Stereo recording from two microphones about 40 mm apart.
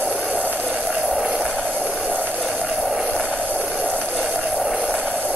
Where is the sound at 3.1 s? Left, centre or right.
Right.